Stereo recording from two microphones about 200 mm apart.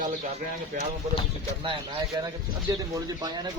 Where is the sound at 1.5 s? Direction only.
25° right (ahead or behind).